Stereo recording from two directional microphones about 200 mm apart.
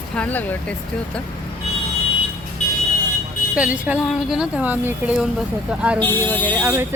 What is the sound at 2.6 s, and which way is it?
Vehicle, 40° left (ahead or behind).